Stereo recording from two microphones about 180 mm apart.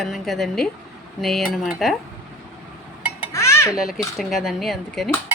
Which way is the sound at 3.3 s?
15° left (ahead or behind).